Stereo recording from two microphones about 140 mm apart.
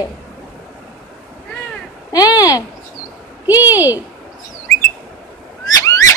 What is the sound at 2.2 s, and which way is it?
Speech, 25° left (ahead or behind).